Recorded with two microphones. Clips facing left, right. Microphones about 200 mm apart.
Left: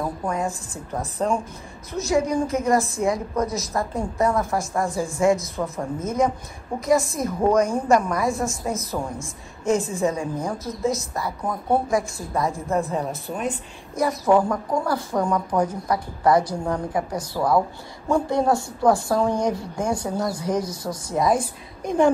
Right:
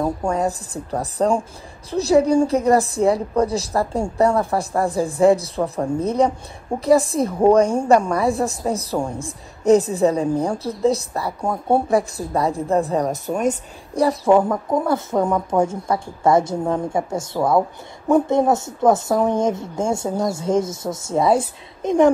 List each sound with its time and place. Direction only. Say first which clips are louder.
0.0 s a woman's voice: right 5 dB; 30° right (ahead or behind)